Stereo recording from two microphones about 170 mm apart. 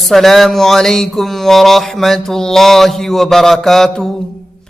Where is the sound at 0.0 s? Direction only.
Centre (ahead or behind).